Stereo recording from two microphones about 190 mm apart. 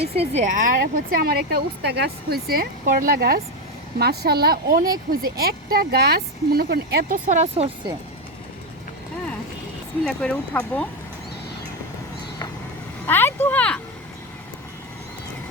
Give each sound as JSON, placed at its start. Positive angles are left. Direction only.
{"t": 0.2, "sound": "speech", "side_deg": -40}
{"t": 7.3, "sound": "speech", "side_deg": -35}
{"t": 10.1, "sound": "speech", "side_deg": 5}
{"t": 13.1, "sound": "speech", "side_deg": 10}